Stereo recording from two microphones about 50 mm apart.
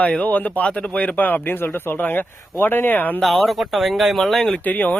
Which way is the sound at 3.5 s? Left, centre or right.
Centre.